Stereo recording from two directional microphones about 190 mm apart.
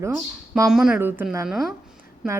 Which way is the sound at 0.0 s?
15° right (ahead or behind).